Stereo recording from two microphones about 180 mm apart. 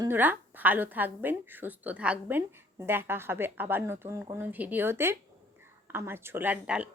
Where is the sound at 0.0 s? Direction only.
10° right (ahead or behind).